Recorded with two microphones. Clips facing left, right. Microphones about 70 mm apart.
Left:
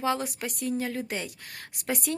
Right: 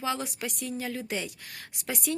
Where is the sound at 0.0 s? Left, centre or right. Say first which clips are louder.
Left 3 dB; left.